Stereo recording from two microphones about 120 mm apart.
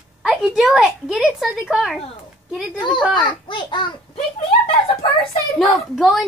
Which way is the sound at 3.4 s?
40° left (ahead or behind).